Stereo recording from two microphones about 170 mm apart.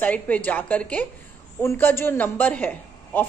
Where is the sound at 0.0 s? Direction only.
10° left (ahead or behind).